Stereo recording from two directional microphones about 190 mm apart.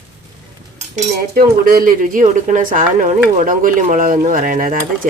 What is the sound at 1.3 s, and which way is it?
Speech, 50° right (ahead or behind).